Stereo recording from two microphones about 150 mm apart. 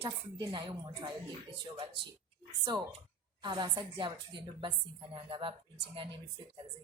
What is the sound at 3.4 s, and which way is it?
A woman's voice, 30° right (ahead or behind).